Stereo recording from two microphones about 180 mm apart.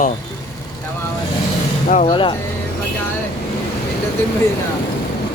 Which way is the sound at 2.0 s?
25° left (ahead or behind).